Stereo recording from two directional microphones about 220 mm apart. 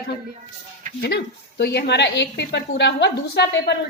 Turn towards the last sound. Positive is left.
turn(degrees=50)  # may be behind; listen again after turning